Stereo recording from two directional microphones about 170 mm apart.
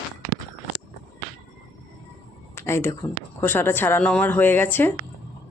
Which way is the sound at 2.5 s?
15° left (ahead or behind).